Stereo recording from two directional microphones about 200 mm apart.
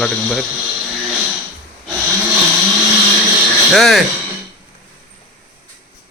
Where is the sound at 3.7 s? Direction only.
Centre (ahead or behind).